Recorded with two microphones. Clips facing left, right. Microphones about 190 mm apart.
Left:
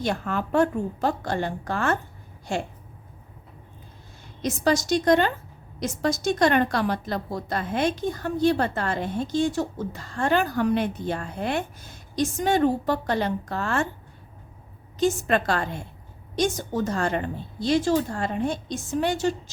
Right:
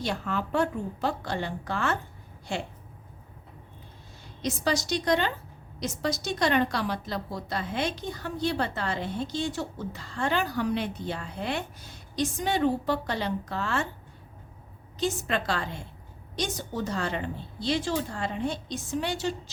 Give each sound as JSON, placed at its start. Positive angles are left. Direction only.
{"t": 0.0, "sound": "a woman's voice", "side_deg": 50}
{"t": 4.4, "sound": "a woman's voice", "side_deg": 50}
{"t": 14.9, "sound": "a woman's voice", "side_deg": 50}